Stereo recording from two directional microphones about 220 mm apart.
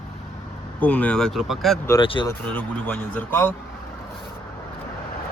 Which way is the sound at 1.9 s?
20° left (ahead or behind).